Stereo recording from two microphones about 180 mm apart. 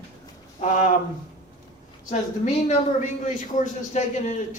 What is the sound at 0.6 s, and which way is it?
Speech, 45° left (ahead or behind).